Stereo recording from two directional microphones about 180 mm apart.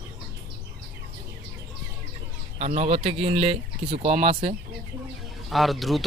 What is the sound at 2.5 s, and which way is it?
Speech, 40° right (ahead or behind).